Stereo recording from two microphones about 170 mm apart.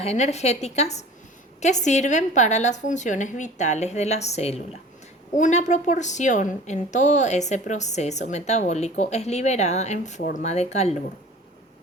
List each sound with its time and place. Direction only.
0.0 s a woman's voice: 40° left (ahead or behind)